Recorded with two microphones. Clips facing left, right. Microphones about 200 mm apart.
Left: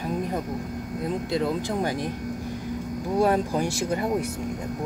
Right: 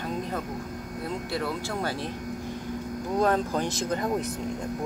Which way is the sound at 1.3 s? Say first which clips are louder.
Left 5 dB; 20° left (ahead or behind).